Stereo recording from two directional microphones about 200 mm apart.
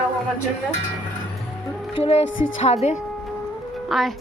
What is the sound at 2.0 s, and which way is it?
A woman's voice, 30° left (ahead or behind).